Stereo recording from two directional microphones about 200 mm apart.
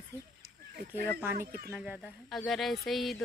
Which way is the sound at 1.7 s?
5° right (ahead or behind).